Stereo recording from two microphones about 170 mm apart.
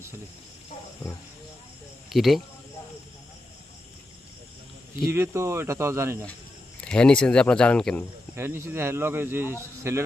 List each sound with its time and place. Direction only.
2.0 s speech: centre (ahead or behind)
5.1 s speech: 15° right (ahead or behind)
6.8 s speech: 5° left (ahead or behind)
8.4 s speech: 15° right (ahead or behind)